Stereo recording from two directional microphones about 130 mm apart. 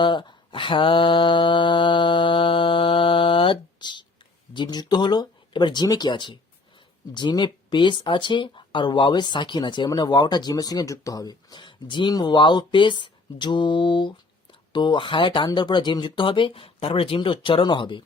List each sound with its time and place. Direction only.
0.0 s mantra: 35° left (ahead or behind)
4.5 s speech: 35° left (ahead or behind)